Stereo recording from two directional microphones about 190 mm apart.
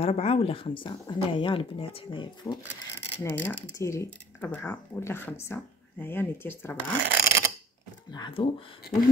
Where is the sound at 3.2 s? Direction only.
10° left (ahead or behind).